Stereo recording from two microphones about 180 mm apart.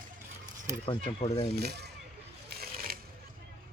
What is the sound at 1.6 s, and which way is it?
Speech, 65° right (ahead or behind).